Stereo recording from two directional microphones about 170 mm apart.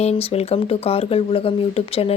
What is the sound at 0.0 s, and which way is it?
Speech, 35° left (ahead or behind).